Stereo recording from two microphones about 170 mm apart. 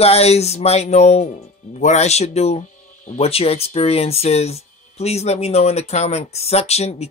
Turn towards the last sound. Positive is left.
turn(degrees=40)  # may be behind; listen again after turning